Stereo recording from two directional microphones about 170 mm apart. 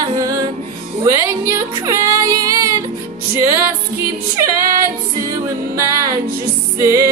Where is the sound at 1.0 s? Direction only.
15° right (ahead or behind).